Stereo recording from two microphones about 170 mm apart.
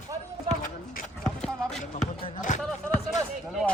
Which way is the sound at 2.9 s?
Centre (ahead or behind).